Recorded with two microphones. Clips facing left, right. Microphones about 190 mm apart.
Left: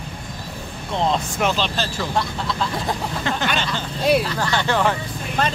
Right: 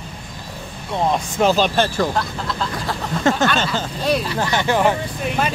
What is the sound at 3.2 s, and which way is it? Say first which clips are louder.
Speech: right 7 dB; 45° right (ahead or behind).